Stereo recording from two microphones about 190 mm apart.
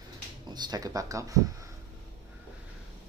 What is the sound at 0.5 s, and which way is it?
Speech, 20° right (ahead or behind).